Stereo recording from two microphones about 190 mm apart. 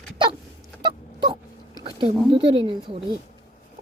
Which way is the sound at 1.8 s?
25° right (ahead or behind).